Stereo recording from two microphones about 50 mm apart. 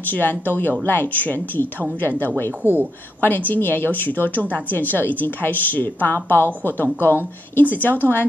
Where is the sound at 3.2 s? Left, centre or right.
Left.